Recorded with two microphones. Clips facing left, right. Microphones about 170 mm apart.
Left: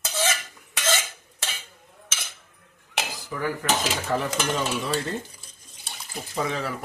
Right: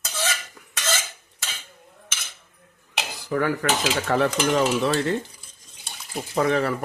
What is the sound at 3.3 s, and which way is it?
Stir, 75° right (ahead or behind).